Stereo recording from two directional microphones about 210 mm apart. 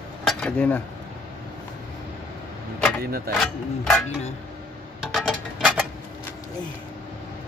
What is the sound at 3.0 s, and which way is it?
Speech, 45° right (ahead or behind).